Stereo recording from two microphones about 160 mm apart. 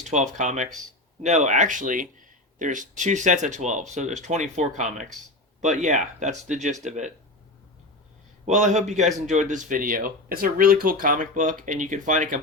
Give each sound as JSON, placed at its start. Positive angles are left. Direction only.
{"t": 0.1, "sound": "speech", "side_deg": -50}
{"t": 8.4, "sound": "speech", "side_deg": -45}